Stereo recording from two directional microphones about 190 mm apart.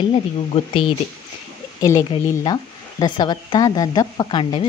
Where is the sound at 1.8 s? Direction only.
15° left (ahead or behind).